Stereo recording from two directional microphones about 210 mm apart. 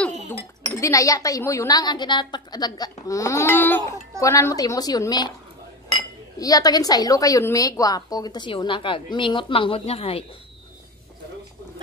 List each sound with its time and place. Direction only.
0.3 s speech: 15° left (ahead or behind)